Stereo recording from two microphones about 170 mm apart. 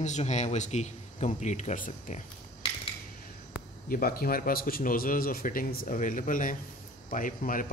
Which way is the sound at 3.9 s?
60° left (ahead or behind).